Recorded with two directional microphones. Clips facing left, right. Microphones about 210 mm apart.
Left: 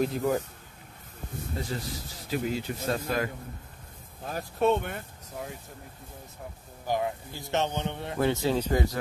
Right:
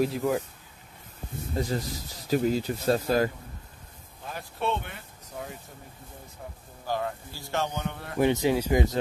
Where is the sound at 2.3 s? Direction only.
40° right (ahead or behind).